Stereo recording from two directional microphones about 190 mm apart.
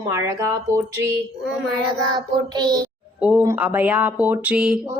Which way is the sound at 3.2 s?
5° right (ahead or behind).